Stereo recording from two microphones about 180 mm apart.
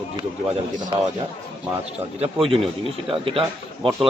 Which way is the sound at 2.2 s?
30° right (ahead or behind).